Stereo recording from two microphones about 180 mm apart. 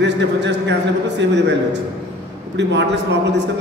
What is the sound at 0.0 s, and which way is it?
A man's voice, 75° right (ahead or behind).